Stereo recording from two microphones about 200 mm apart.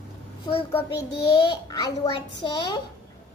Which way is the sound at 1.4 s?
20° left (ahead or behind).